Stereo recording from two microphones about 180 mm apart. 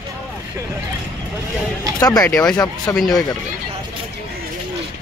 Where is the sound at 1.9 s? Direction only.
20° left (ahead or behind).